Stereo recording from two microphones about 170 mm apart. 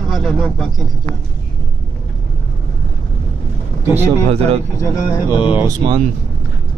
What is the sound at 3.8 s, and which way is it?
Speech, 15° right (ahead or behind).